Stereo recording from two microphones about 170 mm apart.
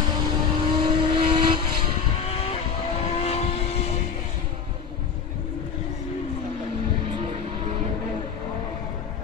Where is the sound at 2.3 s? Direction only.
35° left (ahead or behind).